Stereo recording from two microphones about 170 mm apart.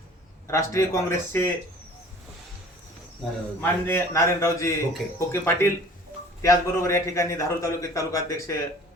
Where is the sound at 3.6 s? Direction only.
15° left (ahead or behind).